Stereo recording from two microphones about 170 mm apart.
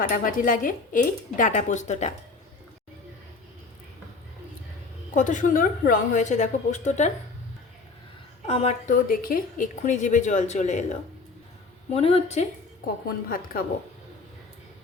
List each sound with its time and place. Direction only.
0.0 s speech: 55° left (ahead or behind)
5.1 s speech: 50° left (ahead or behind)
8.4 s a woman's voice: 35° left (ahead or behind)
8.9 s a woman's voice: 55° left (ahead or behind); by 12.5 s 40° left (ahead or behind)
13.2 s a woman's voice: 55° left (ahead or behind)